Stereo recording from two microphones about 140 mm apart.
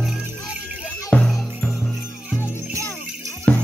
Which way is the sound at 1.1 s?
5° left (ahead or behind).